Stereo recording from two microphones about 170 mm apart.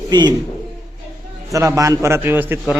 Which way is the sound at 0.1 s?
25° right (ahead or behind).